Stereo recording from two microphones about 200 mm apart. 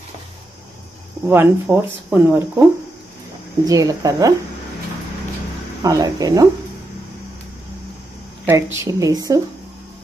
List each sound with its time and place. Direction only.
1.2 s speech: 10° right (ahead or behind)
3.6 s speech: 15° right (ahead or behind)
5.8 s speech: 15° right (ahead or behind)
8.7 s speech: 15° right (ahead or behind)